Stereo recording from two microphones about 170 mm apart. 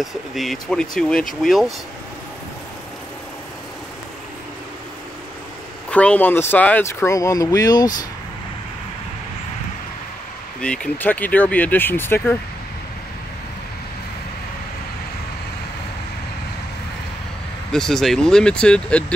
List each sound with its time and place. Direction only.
0.0 s speech: centre (ahead or behind)
5.9 s speech: 5° left (ahead or behind)
10.6 s speech: 5° left (ahead or behind)
17.6 s speech: 5° left (ahead or behind)